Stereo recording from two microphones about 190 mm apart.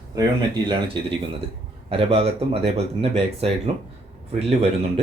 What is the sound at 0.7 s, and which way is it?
Speech, 30° right (ahead or behind).